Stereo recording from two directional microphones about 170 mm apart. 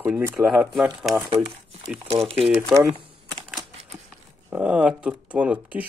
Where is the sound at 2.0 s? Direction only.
35° right (ahead or behind).